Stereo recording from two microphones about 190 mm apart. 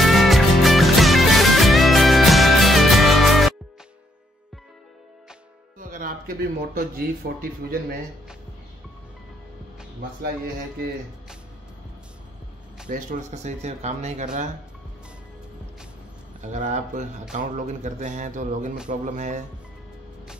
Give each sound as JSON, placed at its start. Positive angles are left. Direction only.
{"t": 0.0, "sound": "music", "side_deg": 0}
{"t": 5.9, "sound": "speech", "side_deg": -45}
{"t": 12.8, "sound": "speech", "side_deg": -45}
{"t": 16.3, "sound": "speech", "side_deg": -40}